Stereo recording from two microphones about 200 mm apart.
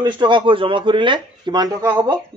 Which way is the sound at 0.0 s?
25° right (ahead or behind).